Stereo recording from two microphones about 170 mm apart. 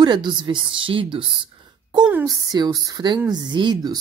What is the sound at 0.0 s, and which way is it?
Speech, 25° right (ahead or behind).